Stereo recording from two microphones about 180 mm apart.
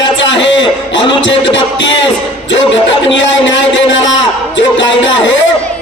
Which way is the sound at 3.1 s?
90° left.